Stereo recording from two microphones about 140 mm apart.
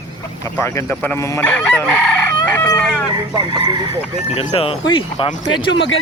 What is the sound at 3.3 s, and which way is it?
Speech, 30° right (ahead or behind).